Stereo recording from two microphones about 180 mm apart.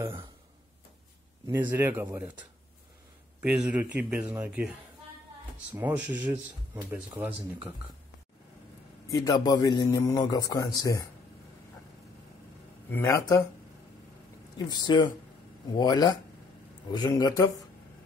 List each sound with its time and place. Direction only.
1.6 s speech: 10° right (ahead or behind)
3.4 s speech: 5° right (ahead or behind)
9.0 s a man's voice: 20° left (ahead or behind)
12.9 s speech: 15° left (ahead or behind)
14.7 s a man's voice: 25° left (ahead or behind)